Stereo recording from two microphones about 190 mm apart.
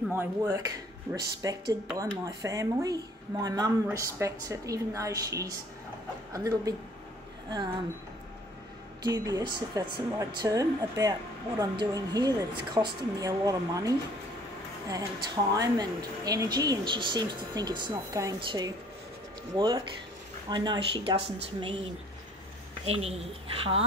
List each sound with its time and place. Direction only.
0.1 s a woman's voice: 15° right (ahead or behind)
9.0 s a woman's voice: 20° right (ahead or behind)
23.0 s a woman's voice: 30° right (ahead or behind)